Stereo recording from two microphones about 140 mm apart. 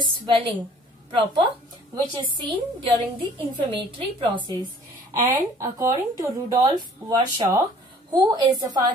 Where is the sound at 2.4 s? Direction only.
35° right (ahead or behind).